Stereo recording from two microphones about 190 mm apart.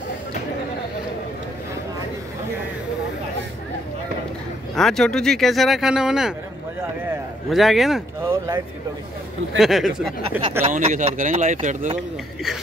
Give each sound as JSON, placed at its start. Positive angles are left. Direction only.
{"t": 4.7, "sound": "speech", "side_deg": 0}
{"t": 7.4, "sound": "speech", "side_deg": 0}
{"t": 8.3, "sound": "speech", "side_deg": -15}
{"t": 9.6, "sound": "speech", "side_deg": 0}
{"t": 10.6, "sound": "speech", "side_deg": -40}